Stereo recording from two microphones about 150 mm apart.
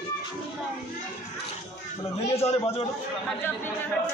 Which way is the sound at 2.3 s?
40° left (ahead or behind).